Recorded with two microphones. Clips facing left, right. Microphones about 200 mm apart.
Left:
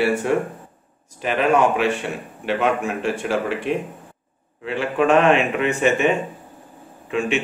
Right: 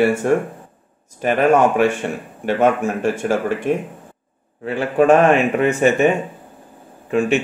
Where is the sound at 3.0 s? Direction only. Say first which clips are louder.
Right 3 dB; 45° right (ahead or behind).